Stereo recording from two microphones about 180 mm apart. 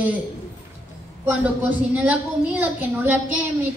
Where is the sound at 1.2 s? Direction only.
10° right (ahead or behind).